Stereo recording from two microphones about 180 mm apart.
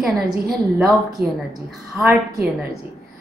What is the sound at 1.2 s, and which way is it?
Speech, 60° right (ahead or behind).